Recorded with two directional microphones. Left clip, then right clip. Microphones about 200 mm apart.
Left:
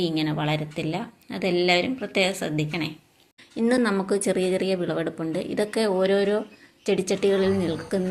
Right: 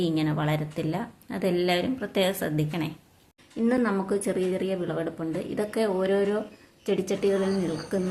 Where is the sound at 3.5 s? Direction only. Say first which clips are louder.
Left 3 dB; 20° left (ahead or behind).